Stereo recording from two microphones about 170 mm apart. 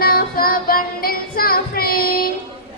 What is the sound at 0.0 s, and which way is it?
Child singing, 60° left (ahead or behind).